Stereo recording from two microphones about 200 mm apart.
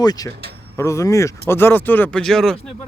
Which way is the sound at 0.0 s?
20° left (ahead or behind).